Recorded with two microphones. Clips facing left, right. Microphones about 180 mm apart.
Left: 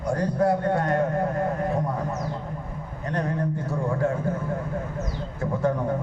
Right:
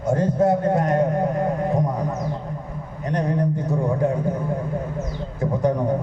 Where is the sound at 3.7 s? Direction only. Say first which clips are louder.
Right 2 dB; 20° right (ahead or behind).